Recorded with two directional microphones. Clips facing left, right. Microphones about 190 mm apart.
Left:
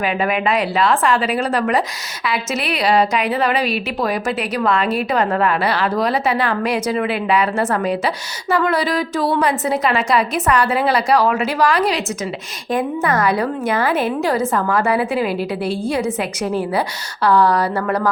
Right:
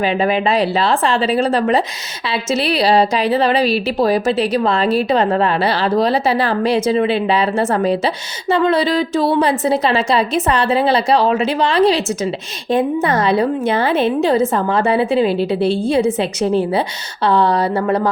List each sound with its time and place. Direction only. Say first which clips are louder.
0.0 s a woman's voice: right 3 dB; 30° right (ahead or behind)